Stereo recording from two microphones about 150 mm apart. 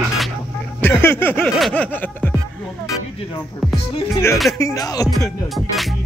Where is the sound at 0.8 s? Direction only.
15° left (ahead or behind).